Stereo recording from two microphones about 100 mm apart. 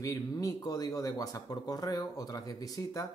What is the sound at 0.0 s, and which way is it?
Speech, 35° left (ahead or behind).